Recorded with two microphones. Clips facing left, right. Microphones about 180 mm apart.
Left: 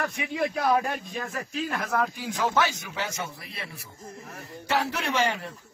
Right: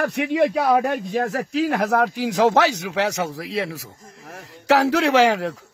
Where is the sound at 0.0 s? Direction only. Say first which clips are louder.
Right 9 dB; 70° right (ahead or behind).